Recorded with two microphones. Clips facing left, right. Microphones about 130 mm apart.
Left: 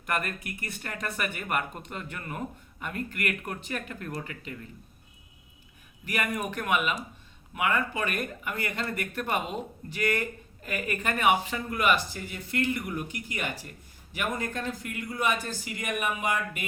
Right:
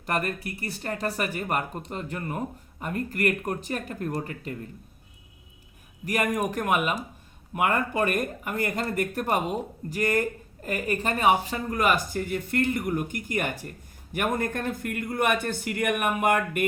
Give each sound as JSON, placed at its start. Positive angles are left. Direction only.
{"t": 0.0, "sound": "speech", "side_deg": -35}
{"t": 6.1, "sound": "speech", "side_deg": -40}